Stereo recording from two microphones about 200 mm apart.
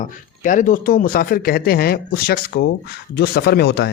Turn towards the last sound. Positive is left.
turn(degrees=55)  # may be behind; listen again after turning